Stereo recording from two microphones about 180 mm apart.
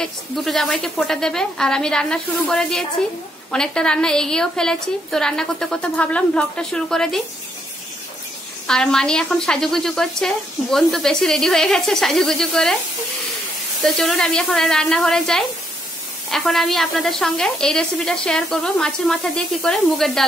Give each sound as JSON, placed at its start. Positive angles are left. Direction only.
{"t": 0.0, "sound": "a woman's voice", "side_deg": 0}
{"t": 8.6, "sound": "a woman's voice", "side_deg": 5}
{"t": 13.8, "sound": "a woman's voice", "side_deg": 0}